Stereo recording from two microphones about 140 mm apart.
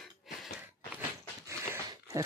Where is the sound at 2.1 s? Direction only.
25° right (ahead or behind).